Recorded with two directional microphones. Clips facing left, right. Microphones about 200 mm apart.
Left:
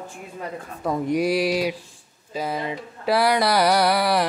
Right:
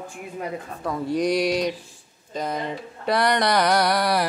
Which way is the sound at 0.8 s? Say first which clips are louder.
Left 3 dB; 20° left (ahead or behind).